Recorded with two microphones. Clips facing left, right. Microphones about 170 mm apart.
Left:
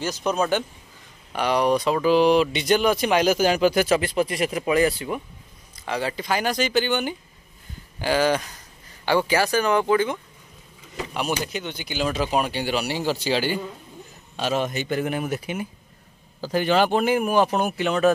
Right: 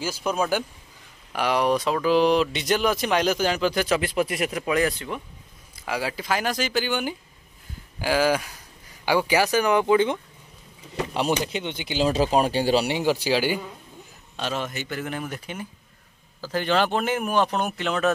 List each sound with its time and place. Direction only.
0.0 s speech: 5° right (ahead or behind)
5.8 s speech: 5° right (ahead or behind)
11.3 s speech: 25° right (ahead or behind)
12.8 s speech: 15° right (ahead or behind)
14.3 s speech: 10° left (ahead or behind)